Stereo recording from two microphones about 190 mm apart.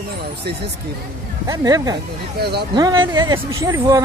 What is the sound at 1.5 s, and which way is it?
Speech, 20° right (ahead or behind).